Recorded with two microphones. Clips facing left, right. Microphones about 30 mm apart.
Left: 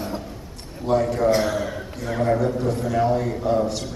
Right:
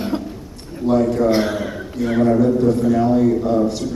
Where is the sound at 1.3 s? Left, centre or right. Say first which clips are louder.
Right 2 dB; right.